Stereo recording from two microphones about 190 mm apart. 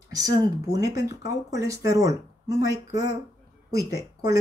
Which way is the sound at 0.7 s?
20° right (ahead or behind).